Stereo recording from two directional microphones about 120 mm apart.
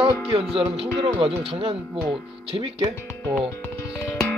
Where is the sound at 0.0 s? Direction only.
55° right (ahead or behind).